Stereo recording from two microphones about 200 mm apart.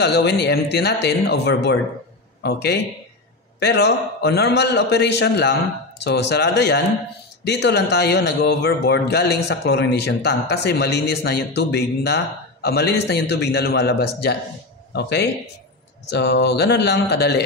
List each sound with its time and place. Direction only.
0.0 s a man's voice: 55° left (ahead or behind)